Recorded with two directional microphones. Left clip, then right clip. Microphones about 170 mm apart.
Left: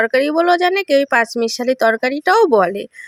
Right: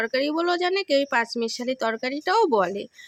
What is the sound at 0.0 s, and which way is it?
Speech, 35° left (ahead or behind).